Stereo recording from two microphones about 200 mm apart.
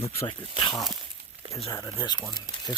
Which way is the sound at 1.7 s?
15° left (ahead or behind).